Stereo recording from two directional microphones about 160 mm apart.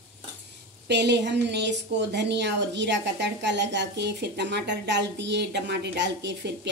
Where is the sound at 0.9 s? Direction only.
90° right.